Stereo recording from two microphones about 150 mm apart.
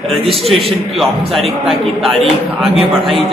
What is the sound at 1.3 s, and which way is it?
A man's voice, centre (ahead or behind).